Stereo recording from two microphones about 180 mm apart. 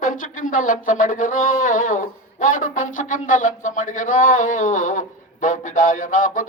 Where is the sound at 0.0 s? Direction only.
50° left (ahead or behind).